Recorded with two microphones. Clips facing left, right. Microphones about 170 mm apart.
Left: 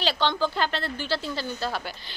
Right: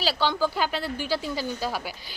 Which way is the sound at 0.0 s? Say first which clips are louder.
Even; 5° right (ahead or behind).